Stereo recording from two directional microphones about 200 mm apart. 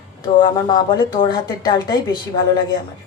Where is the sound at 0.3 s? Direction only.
20° left (ahead or behind).